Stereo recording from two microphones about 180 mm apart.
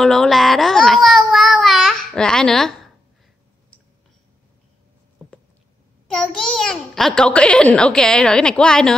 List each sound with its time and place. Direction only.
0.0 s child singing: centre (ahead or behind)
6.0 s a child's voice: 5° left (ahead or behind)